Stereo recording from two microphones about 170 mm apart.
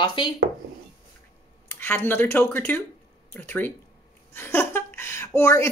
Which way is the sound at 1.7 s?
10° left (ahead or behind).